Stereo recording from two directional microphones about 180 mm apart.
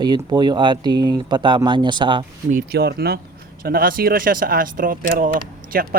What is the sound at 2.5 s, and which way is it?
Speech, 55° right (ahead or behind).